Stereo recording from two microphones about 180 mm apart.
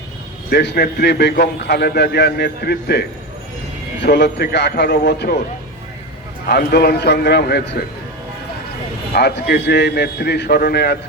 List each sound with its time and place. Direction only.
0.5 s a man's voice: 70° left (ahead or behind)
6.5 s a man's voice: 60° left (ahead or behind)
9.1 s a man's voice: 70° left (ahead or behind)